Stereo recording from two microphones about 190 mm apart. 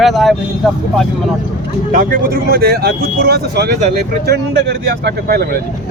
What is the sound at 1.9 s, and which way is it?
Speech, 45° right (ahead or behind).